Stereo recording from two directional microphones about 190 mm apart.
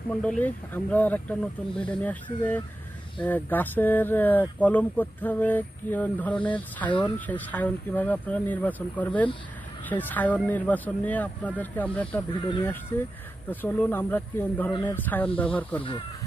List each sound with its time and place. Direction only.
0.1 s speech: 5° left (ahead or behind)
3.2 s speech: 10° left (ahead or behind)
6.9 s speech: 25° left (ahead or behind)
7.2 s speech: 10° left (ahead or behind)
12.4 s speech: 25° left (ahead or behind)
12.9 s speech: 10° left (ahead or behind)